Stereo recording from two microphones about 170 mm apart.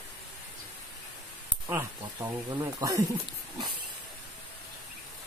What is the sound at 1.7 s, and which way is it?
Speech, 15° right (ahead or behind).